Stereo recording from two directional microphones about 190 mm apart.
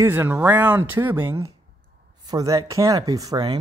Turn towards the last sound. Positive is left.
turn(degrees=-20)  # may be behind; listen again after turning